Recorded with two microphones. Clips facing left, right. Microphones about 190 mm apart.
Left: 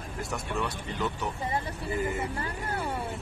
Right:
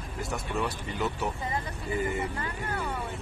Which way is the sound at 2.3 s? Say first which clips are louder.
Left 1 dB; 30° left (ahead or behind).